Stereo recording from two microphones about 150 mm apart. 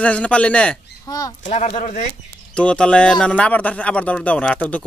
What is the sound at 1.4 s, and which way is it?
Speech, 50° left (ahead or behind).